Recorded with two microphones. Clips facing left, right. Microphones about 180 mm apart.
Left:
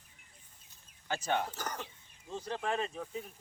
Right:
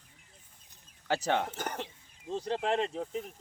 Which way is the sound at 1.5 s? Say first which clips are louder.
Right 4 dB; 25° right (ahead or behind).